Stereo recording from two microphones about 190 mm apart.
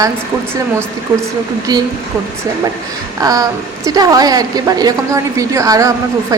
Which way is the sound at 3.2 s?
20° right (ahead or behind).